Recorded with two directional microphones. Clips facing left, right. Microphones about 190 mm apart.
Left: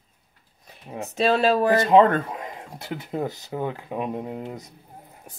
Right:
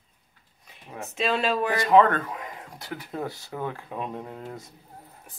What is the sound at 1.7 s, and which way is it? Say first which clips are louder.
Speech: left 1 dB; 25° left (ahead or behind).